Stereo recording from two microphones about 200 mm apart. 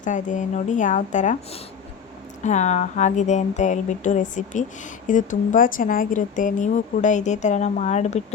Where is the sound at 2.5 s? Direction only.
35° left (ahead or behind).